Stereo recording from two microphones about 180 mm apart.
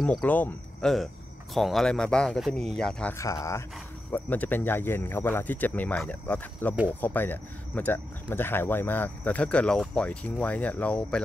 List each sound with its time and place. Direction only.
0.2 s speech: 10° left (ahead or behind)
3.2 s speech: 15° left (ahead or behind)